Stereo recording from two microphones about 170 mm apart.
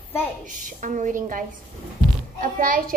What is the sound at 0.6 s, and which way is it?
A woman's voice, 50° right (ahead or behind).